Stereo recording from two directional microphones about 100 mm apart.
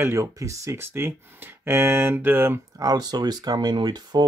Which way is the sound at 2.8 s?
40° right (ahead or behind).